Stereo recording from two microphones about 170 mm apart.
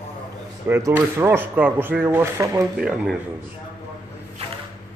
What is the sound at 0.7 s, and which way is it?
A man's voice, 10° right (ahead or behind).